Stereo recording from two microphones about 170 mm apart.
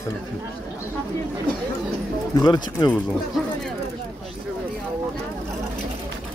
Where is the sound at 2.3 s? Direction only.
25° left (ahead or behind).